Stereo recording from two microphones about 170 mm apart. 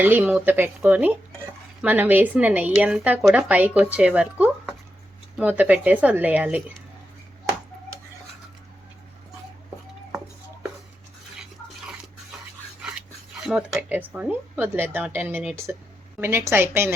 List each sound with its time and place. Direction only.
0.0 s a woman's voice: 10° right (ahead or behind)
13.4 s a woman's voice: 5° right (ahead or behind)